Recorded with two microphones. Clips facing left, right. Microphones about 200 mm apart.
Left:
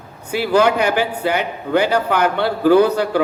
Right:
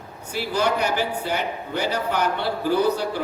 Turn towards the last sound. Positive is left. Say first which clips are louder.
# left 8 dB
turn(degrees=70)  # may be behind; listen again after turning